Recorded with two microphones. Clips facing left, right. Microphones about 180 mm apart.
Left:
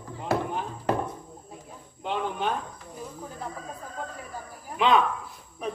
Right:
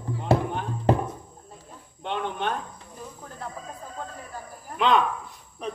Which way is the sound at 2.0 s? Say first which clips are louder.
Even; 5° left (ahead or behind).